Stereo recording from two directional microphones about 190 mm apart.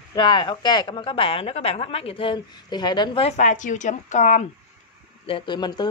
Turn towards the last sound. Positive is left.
turn(degrees=25)  # may be behind; listen again after turning